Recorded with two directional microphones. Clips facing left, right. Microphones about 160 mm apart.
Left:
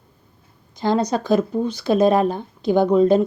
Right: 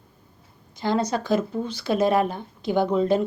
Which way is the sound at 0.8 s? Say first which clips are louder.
Left 4 dB; 20° left (ahead or behind).